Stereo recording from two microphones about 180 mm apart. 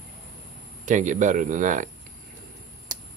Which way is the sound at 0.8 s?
45° right (ahead or behind).